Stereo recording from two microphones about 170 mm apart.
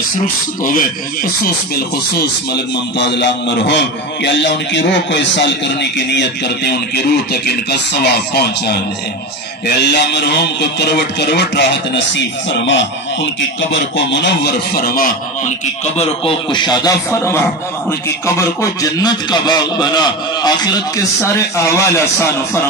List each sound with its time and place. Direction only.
0.7 s speech: 55° left (ahead or behind)
2.1 s a man's voice: 80° left
9.8 s speech: 80° left; by 15.5 s 60° left (ahead or behind)
16.0 s a man's voice: 30° left (ahead or behind)